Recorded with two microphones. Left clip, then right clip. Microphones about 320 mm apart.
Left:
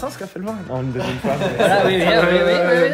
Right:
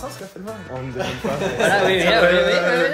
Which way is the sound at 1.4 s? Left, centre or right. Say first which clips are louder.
Left 2 dB; centre.